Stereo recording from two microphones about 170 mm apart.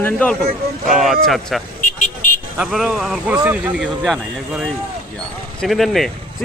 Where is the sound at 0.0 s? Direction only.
10° left (ahead or behind).